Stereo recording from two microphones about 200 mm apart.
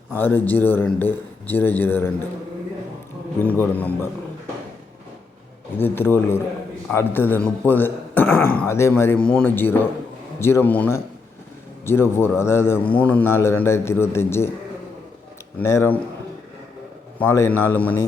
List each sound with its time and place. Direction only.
0.1 s a man's voice: 10° left (ahead or behind)
3.4 s a man's voice: 10° left (ahead or behind)
5.7 s a man's voice: 10° left (ahead or behind)
15.5 s a man's voice: 10° left (ahead or behind)
17.2 s a man's voice: 10° left (ahead or behind)